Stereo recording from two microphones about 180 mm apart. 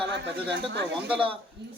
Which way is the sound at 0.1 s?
75° right (ahead or behind).